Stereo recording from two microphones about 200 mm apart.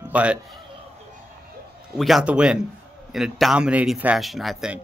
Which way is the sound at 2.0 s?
Centre (ahead or behind).